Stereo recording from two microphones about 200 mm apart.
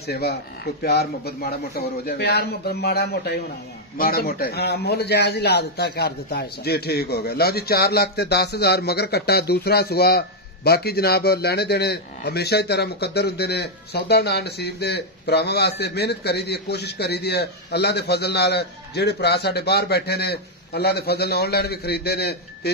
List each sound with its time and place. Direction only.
0.0 s a man's voice: 55° left (ahead or behind)